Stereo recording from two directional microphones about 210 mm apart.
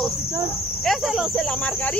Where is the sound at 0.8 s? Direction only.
Centre (ahead or behind).